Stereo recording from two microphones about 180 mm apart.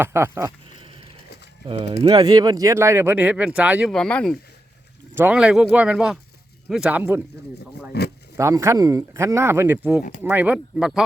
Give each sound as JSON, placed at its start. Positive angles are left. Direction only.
{"t": 0.0, "sound": "speech", "side_deg": -15}
{"t": 1.6, "sound": "speech", "side_deg": -30}
{"t": 3.9, "sound": "speech", "side_deg": 5}
{"t": 5.1, "sound": "speech", "side_deg": -10}
{"t": 7.9, "sound": "speech", "side_deg": 65}
{"t": 8.4, "sound": "speech", "side_deg": -15}